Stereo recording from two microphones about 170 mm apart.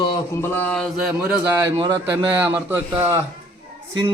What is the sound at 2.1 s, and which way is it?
A man's voice, 10° right (ahead or behind).